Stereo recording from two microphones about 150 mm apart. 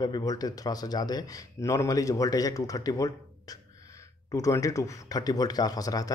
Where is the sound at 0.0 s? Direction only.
25° left (ahead or behind).